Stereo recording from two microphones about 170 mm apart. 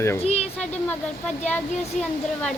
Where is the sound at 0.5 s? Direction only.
10° left (ahead or behind).